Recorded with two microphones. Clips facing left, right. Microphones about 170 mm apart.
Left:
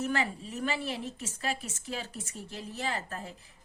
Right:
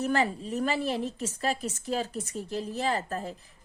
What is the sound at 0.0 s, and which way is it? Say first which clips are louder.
A woman's voice: right 4 dB; 35° right (ahead or behind).